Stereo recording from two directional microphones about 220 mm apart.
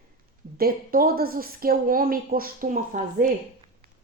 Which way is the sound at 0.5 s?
40° right (ahead or behind).